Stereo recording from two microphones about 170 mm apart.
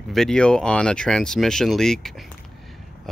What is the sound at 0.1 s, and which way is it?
Speech, 5° left (ahead or behind).